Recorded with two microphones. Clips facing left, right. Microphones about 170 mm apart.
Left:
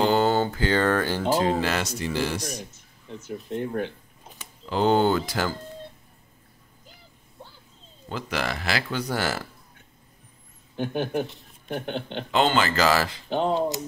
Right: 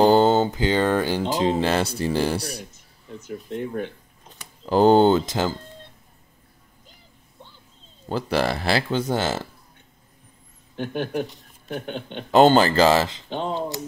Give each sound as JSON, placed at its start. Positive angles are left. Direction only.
{"t": 0.0, "sound": "a sound", "side_deg": -30}
{"t": 1.3, "sound": "speech", "side_deg": -20}
{"t": 3.4, "sound": "speech", "side_deg": 0}
{"t": 4.6, "sound": "speech", "side_deg": -40}
{"t": 8.1, "sound": "speech", "side_deg": -35}
{"t": 10.8, "sound": "speech", "side_deg": 5}
{"t": 12.3, "sound": "speech", "side_deg": -40}
{"t": 13.3, "sound": "speech", "side_deg": 10}